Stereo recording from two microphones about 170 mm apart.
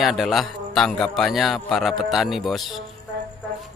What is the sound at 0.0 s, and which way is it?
A man's voice, centre (ahead or behind).